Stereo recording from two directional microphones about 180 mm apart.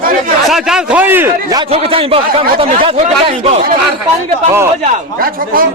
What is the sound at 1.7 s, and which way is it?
Speech, 30° right (ahead or behind).